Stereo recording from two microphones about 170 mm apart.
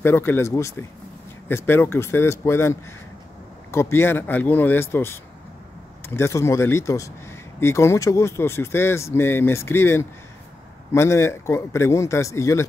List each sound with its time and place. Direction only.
0.0 s speech: 15° left (ahead or behind)